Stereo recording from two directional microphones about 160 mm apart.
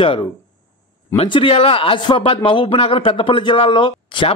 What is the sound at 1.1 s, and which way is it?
A man's voice, 35° left (ahead or behind).